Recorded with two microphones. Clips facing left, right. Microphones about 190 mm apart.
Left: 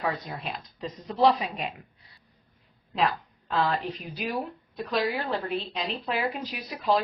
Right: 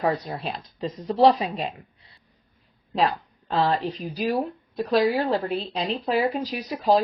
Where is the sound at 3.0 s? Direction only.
30° right (ahead or behind).